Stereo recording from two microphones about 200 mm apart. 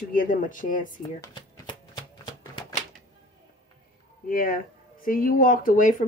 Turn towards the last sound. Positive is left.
turn(degrees=40)  # may be behind; listen again after turning